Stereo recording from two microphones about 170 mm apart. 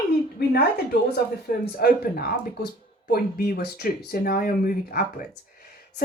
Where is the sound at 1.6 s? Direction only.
65° left (ahead or behind).